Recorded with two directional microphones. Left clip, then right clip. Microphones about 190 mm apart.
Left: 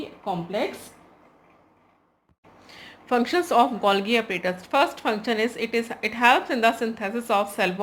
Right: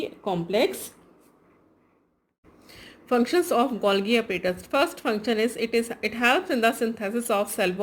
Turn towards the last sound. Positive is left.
turn(degrees=-20)  # may be behind; listen again after turning